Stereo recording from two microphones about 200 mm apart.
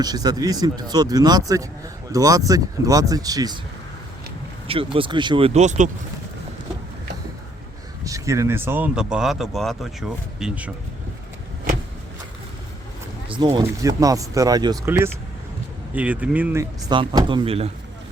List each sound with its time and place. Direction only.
0.0 s speech: 20° right (ahead or behind)
4.7 s speech: 25° right (ahead or behind)
8.0 s speech: 15° right (ahead or behind)
13.2 s speech: 25° right (ahead or behind)
16.9 s speech: 25° right (ahead or behind)